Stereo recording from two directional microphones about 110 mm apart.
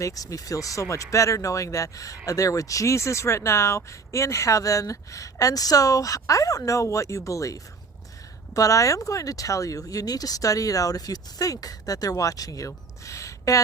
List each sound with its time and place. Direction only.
0.0 s speech: 30° left (ahead or behind)